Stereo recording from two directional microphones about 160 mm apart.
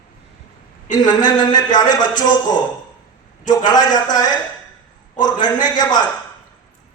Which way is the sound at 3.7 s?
25° left (ahead or behind).